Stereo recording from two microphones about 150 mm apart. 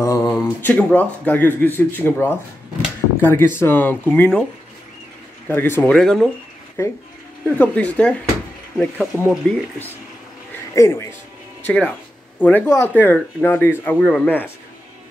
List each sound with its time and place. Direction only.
0.0 s speech: 20° left (ahead or behind)
5.5 s speech: 15° left (ahead or behind)
5.9 s speech: centre (ahead or behind)
6.8 s speech: 15° left (ahead or behind)
9.5 s speech: 15° left (ahead or behind)
10.5 s a sound: 15° left (ahead or behind)
11.6 s speech: 10° left (ahead or behind)
13.9 s speech: centre (ahead or behind)
14.2 s speech: 10° left (ahead or behind)